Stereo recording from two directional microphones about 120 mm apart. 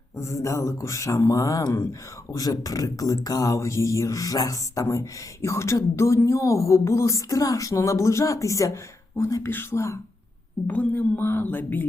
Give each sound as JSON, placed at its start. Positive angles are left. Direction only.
{"t": 0.2, "sound": "speech", "side_deg": 25}
{"t": 10.7, "sound": "speech", "side_deg": 10}